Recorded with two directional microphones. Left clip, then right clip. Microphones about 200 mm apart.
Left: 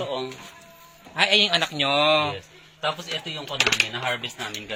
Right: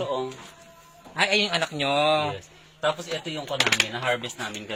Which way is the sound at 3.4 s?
35° right (ahead or behind).